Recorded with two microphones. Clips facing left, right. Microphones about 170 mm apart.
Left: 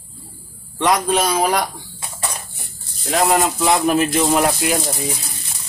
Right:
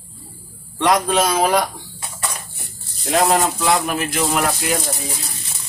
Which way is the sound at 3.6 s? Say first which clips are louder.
Left 3 dB; 25° left (ahead or behind).